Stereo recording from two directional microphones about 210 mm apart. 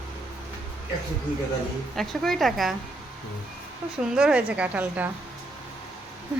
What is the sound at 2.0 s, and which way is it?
Speech, centre (ahead or behind).